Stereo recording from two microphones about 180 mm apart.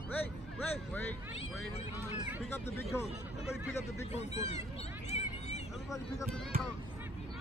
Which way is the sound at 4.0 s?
40° left (ahead or behind).